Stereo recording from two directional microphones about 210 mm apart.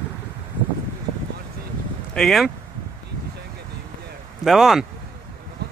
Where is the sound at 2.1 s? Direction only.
Centre (ahead or behind).